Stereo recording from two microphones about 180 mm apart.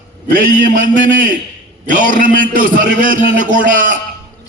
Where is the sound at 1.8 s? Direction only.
45° right (ahead or behind).